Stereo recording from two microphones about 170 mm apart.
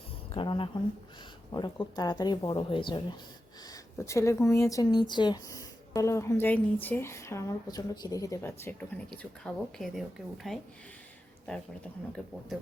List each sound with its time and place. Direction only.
0.3 s speech: 30° left (ahead or behind)
3.7 s speech: 15° left (ahead or behind); by 10.6 s centre (ahead or behind)
12.2 s speech: 5° left (ahead or behind)